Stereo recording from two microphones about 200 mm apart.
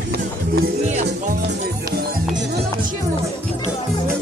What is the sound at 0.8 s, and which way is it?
Music, 35° right (ahead or behind).